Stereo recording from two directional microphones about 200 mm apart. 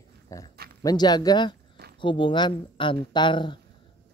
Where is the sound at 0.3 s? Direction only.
15° left (ahead or behind).